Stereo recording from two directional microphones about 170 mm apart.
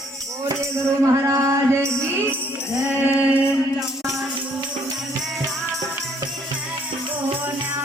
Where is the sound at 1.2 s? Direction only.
20° right (ahead or behind).